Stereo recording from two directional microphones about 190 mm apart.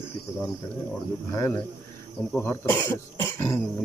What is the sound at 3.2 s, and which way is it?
Throat clearing, 15° left (ahead or behind).